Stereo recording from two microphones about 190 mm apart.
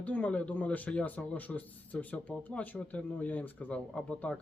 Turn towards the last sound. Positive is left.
turn(degrees=5)  # may be behind; listen again after turning